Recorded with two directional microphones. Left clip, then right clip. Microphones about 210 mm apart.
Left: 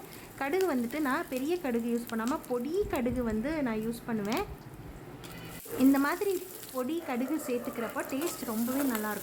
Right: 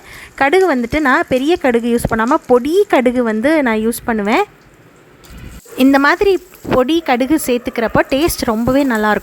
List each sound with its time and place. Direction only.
0.3 s speech: 35° right (ahead or behind)
5.8 s speech: 40° right (ahead or behind)